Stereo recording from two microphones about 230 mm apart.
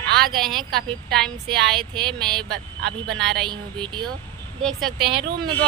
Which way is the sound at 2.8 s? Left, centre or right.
Right.